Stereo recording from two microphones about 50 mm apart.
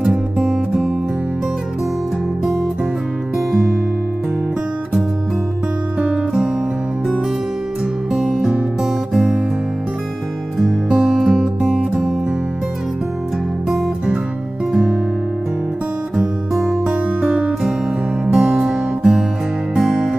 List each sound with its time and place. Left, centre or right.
0.0 s music: centre
8.1 s music: centre
10.6 s music: centre
16.5 s music: centre
17.2 s music: right
18.2 s music: centre